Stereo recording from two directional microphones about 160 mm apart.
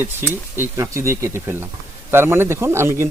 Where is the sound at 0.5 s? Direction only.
15° right (ahead or behind).